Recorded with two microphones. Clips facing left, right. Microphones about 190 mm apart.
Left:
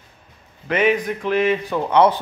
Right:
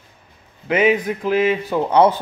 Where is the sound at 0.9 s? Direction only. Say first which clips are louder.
Right 2 dB; 25° right (ahead or behind).